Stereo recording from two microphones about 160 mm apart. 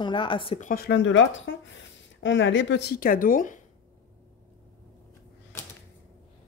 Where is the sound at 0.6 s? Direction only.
70° left (ahead or behind).